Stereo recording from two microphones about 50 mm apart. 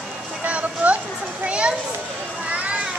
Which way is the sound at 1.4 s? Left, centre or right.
Right.